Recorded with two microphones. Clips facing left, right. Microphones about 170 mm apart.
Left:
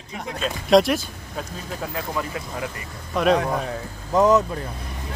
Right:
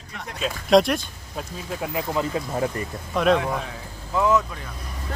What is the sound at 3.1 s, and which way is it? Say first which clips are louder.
Speech: left 1 dB; centre (ahead or behind).